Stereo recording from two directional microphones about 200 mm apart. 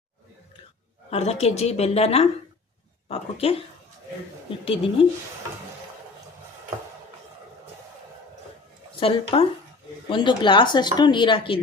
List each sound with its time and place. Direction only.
1.1 s a woman's voice: 30° left (ahead or behind)
4.6 s speech: 25° left (ahead or behind)
9.0 s speech: 25° left (ahead or behind)